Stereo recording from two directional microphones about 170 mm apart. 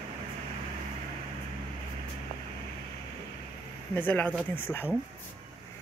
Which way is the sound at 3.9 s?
10° left (ahead or behind).